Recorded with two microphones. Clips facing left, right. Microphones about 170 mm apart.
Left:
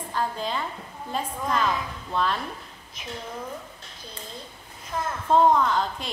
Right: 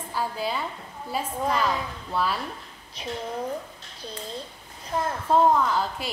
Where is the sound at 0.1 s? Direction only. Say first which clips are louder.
Even; 10° right (ahead or behind).